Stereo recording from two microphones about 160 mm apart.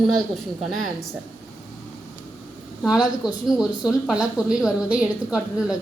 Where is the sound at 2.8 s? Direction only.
5° right (ahead or behind).